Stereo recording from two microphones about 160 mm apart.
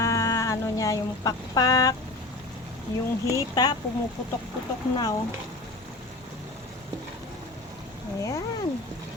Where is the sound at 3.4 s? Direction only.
25° left (ahead or behind).